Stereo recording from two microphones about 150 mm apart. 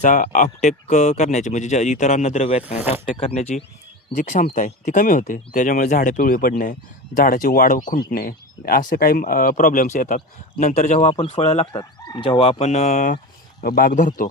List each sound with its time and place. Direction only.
0.0 s speech: 55° left (ahead or behind)
4.1 s speech: 60° left (ahead or behind)
11.1 s speech: 35° left (ahead or behind)
11.7 s speech: 30° left (ahead or behind); by 13.1 s 55° left (ahead or behind)
13.6 s speech: 75° left (ahead or behind)